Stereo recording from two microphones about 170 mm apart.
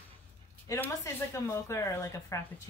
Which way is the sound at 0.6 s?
15° left (ahead or behind).